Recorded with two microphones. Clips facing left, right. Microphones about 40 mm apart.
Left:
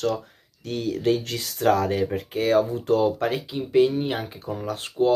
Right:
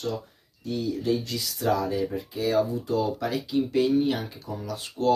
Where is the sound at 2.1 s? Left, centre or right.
Left.